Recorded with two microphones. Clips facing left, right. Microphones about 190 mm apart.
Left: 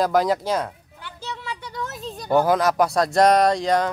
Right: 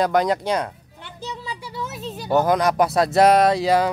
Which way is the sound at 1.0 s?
15° right (ahead or behind).